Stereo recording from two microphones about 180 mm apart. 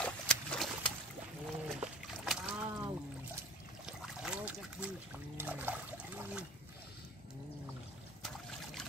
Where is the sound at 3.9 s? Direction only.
5° right (ahead or behind).